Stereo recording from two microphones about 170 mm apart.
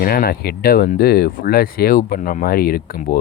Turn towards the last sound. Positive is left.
turn(degrees=60)  # may be behind; listen again after turning